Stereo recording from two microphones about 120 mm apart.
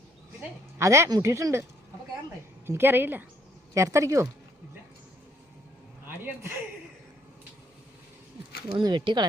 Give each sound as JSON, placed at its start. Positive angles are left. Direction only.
{"t": 0.8, "sound": "speech", "side_deg": -25}
{"t": 2.6, "sound": "speech", "side_deg": -20}
{"t": 6.1, "sound": "a man's voice", "side_deg": -15}
{"t": 8.7, "sound": "speech", "side_deg": -40}